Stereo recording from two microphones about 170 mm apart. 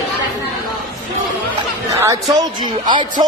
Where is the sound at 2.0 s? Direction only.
20° right (ahead or behind).